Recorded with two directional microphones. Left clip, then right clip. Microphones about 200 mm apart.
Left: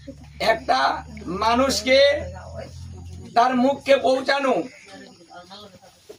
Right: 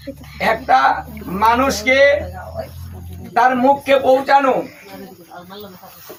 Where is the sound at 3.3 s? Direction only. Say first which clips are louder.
Right 6 dB; 20° left (ahead or behind).